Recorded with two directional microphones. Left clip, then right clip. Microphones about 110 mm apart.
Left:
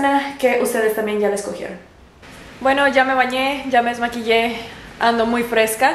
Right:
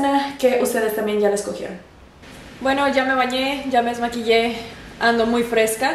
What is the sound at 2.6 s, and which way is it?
A woman's voice, 15° right (ahead or behind).